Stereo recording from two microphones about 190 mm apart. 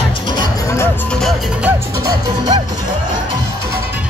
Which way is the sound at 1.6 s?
15° right (ahead or behind).